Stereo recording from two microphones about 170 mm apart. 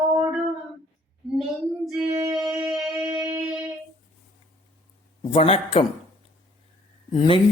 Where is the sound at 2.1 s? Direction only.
20° right (ahead or behind).